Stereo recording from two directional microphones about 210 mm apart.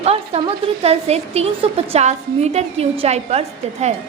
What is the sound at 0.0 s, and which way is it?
A woman's voice, 30° right (ahead or behind).